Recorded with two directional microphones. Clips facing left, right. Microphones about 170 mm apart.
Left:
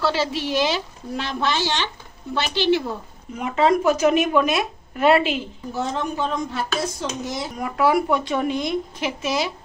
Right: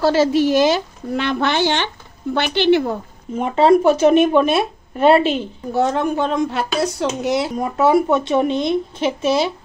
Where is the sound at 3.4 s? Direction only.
30° right (ahead or behind).